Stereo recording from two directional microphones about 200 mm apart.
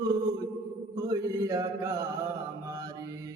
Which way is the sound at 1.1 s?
15° right (ahead or behind).